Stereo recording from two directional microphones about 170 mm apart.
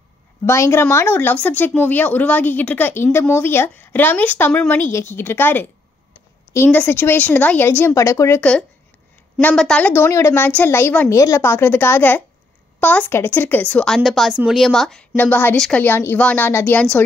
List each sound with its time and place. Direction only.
0.5 s a woman's voice: 15° left (ahead or behind)